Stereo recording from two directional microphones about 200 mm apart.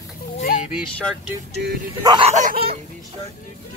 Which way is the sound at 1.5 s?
55° right (ahead or behind).